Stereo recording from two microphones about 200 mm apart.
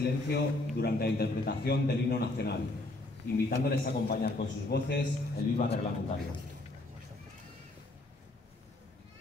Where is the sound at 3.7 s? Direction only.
50° left (ahead or behind).